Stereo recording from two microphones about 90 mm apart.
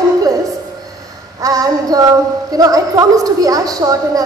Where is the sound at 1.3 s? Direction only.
40° right (ahead or behind).